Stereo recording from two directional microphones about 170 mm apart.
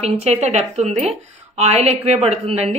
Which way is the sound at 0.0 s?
40° right (ahead or behind).